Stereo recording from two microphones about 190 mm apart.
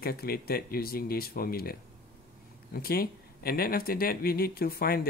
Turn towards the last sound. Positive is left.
turn(degrees=50)  # may be behind; listen again after turning